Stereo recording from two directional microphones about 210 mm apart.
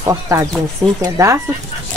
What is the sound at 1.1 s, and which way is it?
Speech, 15° right (ahead or behind).